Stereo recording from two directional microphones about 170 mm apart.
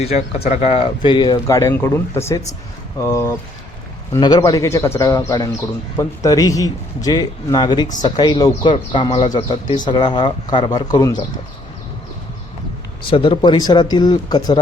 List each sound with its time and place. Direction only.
0.0 s speech: 35° left (ahead or behind)
1.0 s a man's voice: 25° left (ahead or behind)
13.1 s a man's voice: 30° left (ahead or behind)